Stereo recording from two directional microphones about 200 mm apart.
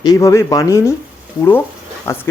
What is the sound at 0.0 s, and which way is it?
A man's voice, 15° left (ahead or behind).